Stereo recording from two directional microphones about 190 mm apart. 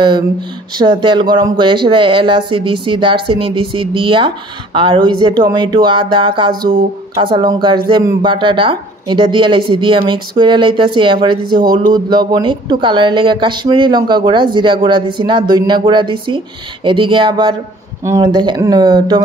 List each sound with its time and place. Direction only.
0.7 s speech: 25° right (ahead or behind)